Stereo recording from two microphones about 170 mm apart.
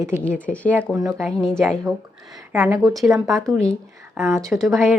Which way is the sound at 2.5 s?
15° right (ahead or behind).